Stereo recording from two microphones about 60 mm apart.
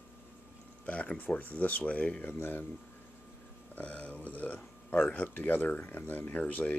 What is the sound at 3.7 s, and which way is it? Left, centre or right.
Speech, left.